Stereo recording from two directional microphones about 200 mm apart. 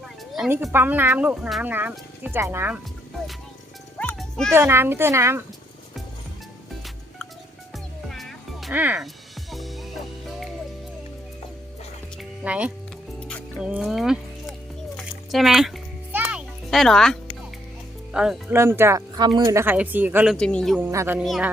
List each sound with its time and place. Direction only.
0.3 s speech: 5° right (ahead or behind)
3.9 s music: 5° left (ahead or behind)
4.5 s speech: 10° right (ahead or behind)
8.1 s music: centre (ahead or behind)
12.1 s music: 5° right (ahead or behind)
13.1 s music: 5° left (ahead or behind)
18.1 s speech: 5° right (ahead or behind)
20.3 s a woman's voice: 5° left (ahead or behind)
20.8 s speech: 15° right (ahead or behind)
21.2 s a woman's voice: centre (ahead or behind)